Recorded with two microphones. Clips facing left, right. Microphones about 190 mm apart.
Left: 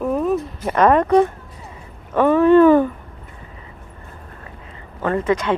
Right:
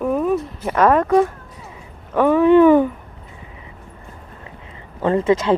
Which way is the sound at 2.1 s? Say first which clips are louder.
Even; 10° right (ahead or behind).